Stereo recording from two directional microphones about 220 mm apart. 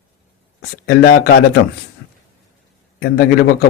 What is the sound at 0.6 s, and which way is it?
Speech, 45° left (ahead or behind).